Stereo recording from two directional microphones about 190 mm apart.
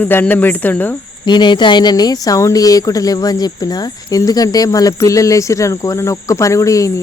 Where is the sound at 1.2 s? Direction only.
25° left (ahead or behind).